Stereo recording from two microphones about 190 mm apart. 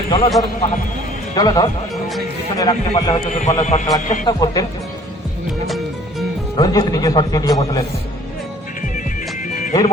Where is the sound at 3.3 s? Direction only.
35° left (ahead or behind).